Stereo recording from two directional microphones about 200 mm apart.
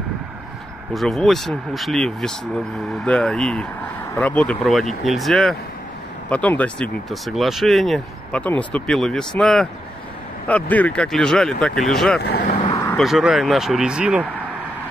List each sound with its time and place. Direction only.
0.9 s speech: centre (ahead or behind)
12.2 s speech: 55° left (ahead or behind)
12.8 s speech: centre (ahead or behind)